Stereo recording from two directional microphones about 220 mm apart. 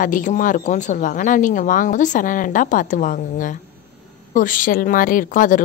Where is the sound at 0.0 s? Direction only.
35° left (ahead or behind).